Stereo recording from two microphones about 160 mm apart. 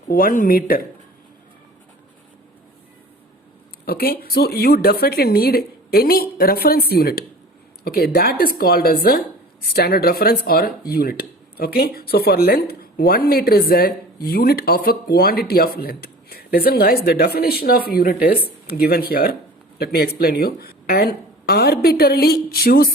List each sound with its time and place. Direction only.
0.1 s speech: 65° left (ahead or behind)
3.8 s speech: 70° left (ahead or behind)